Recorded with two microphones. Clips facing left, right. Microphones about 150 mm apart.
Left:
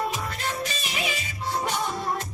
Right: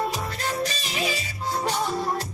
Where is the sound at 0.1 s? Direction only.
35° right (ahead or behind).